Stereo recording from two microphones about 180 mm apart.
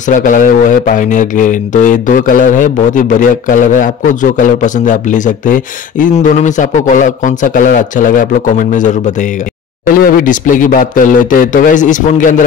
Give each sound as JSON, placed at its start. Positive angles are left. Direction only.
{"t": 0.1, "sound": "a man's voice", "side_deg": 45}
{"t": 9.9, "sound": "a man's voice", "side_deg": 55}